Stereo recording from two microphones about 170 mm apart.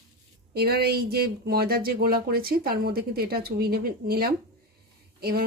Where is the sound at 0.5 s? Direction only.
65° right (ahead or behind).